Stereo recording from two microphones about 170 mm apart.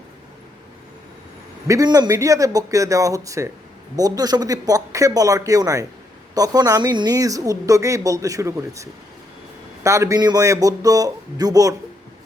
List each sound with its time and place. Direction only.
1.6 s speech: 20° right (ahead or behind)